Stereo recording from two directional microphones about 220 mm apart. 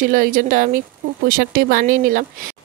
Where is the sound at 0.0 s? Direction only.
40° right (ahead or behind).